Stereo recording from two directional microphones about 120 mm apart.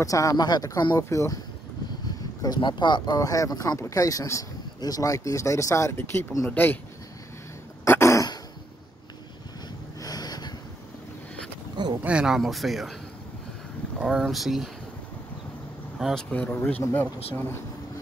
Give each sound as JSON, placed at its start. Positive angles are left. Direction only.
{"t": 0.0, "sound": "speech", "side_deg": 25}
{"t": 2.0, "sound": "speech", "side_deg": 35}
{"t": 7.8, "sound": "throat clearing", "side_deg": 20}
{"t": 9.9, "sound": "a sound", "side_deg": 35}
{"t": 11.7, "sound": "a sound", "side_deg": -40}
{"t": 12.0, "sound": "speech", "side_deg": -10}
{"t": 13.9, "sound": "speech", "side_deg": -10}
{"t": 16.0, "sound": "speech", "side_deg": 0}
{"t": 16.3, "sound": "speech", "side_deg": 15}